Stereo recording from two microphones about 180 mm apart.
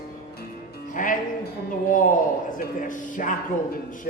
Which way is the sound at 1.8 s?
45° left (ahead or behind).